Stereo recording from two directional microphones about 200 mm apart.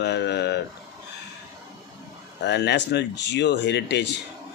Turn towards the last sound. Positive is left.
turn(degrees=60)  # may be behind; listen again after turning